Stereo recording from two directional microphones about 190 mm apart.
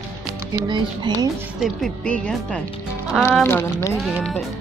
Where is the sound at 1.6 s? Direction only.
Centre (ahead or behind).